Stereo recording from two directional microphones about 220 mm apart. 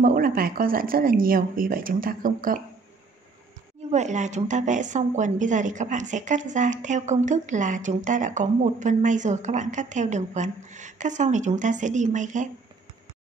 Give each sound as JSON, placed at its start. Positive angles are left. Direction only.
{"t": 0.0, "sound": "a woman's voice", "side_deg": -40}
{"t": 3.9, "sound": "a woman's voice", "side_deg": -30}